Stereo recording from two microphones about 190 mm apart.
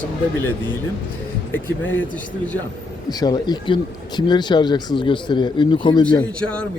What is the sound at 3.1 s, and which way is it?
Speech, 20° left (ahead or behind).